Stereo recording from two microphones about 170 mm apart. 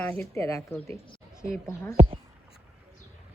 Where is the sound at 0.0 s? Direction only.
15° left (ahead or behind).